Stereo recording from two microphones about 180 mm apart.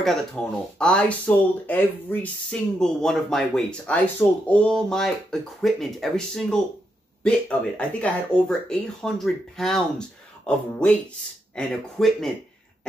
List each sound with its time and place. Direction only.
0.0 s speech: 5° left (ahead or behind)